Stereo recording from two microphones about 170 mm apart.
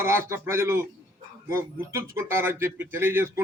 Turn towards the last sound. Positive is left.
turn(degrees=-15)  # may be behind; listen again after turning